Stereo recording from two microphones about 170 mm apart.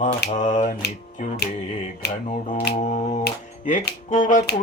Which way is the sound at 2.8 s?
45° left (ahead or behind).